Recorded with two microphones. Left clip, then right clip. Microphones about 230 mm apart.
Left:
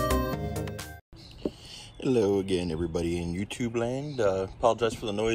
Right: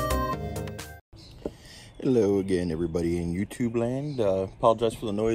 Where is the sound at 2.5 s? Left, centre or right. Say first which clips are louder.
Right 2 dB; left.